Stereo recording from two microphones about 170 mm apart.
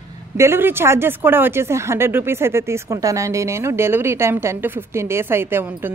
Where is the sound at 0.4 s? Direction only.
15° right (ahead or behind).